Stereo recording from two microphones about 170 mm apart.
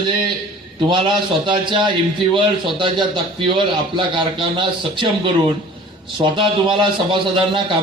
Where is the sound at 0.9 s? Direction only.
30° right (ahead or behind).